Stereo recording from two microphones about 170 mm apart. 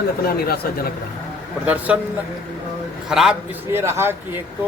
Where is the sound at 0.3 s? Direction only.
65° left (ahead or behind).